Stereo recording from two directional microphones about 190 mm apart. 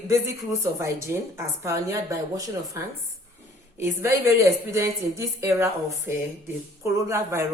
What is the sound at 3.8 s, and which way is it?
A woman's voice, 15° right (ahead or behind).